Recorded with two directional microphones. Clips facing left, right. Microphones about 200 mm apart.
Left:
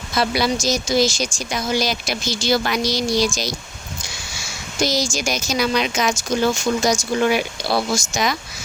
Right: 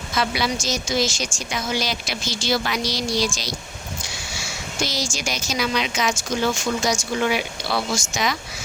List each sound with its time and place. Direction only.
0.2 s speech: 40° left (ahead or behind)
4.8 s speech: 40° left (ahead or behind)